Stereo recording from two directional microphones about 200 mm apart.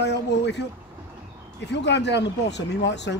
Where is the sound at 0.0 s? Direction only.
60° left (ahead or behind).